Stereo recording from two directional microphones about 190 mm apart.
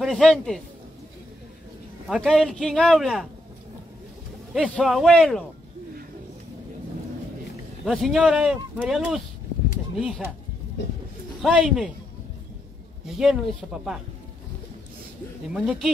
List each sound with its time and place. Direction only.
0.0 s speech: centre (ahead or behind)
2.0 s speech: centre (ahead or behind)
4.6 s speech: 5° left (ahead or behind)
7.8 s speech: centre (ahead or behind)
11.4 s speech: 5° right (ahead or behind)
13.0 s speech: 5° right (ahead or behind)
15.5 s speech: 5° right (ahead or behind)